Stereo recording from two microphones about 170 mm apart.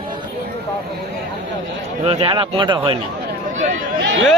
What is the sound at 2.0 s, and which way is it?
Speech, 35° right (ahead or behind).